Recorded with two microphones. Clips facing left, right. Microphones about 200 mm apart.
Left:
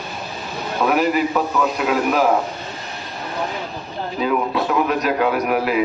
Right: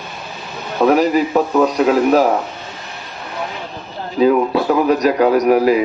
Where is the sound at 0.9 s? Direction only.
40° right (ahead or behind).